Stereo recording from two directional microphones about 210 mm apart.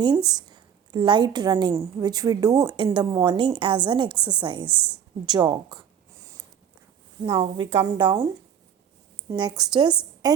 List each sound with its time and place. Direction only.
0.0 s a woman's voice: 20° right (ahead or behind)
7.3 s a woman's voice: 20° right (ahead or behind)
9.3 s a woman's voice: 20° right (ahead or behind)